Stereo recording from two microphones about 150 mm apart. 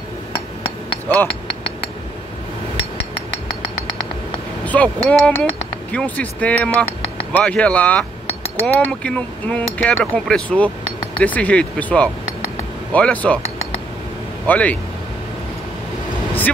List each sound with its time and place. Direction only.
1.0 s chink: 10° left (ahead or behind)
1.5 s chink: 35° left (ahead or behind)
4.6 s speech: 10° left (ahead or behind)
14.4 s speech: 10° left (ahead or behind)